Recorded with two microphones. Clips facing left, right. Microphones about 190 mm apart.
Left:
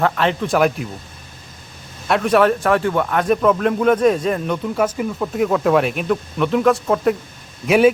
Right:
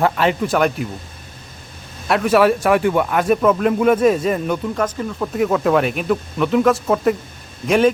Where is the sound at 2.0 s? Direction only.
5° right (ahead or behind).